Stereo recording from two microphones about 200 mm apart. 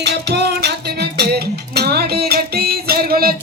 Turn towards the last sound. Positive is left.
turn(degrees=-50)  # may be behind; listen again after turning